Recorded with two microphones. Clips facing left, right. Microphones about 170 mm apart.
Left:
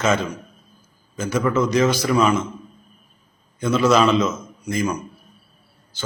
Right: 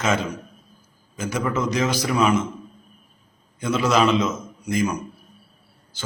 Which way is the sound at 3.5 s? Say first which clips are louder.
Left 3 dB; 15° right (ahead or behind).